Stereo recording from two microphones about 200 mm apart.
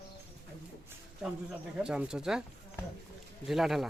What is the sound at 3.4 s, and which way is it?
Speech, centre (ahead or behind).